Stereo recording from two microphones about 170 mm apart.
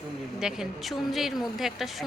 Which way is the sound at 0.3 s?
5° right (ahead or behind).